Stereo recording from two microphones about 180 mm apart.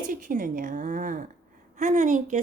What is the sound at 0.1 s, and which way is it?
Speech, 50° right (ahead or behind).